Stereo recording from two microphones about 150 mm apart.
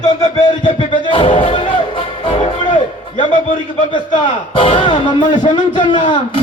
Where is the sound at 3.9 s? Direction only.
35° left (ahead or behind).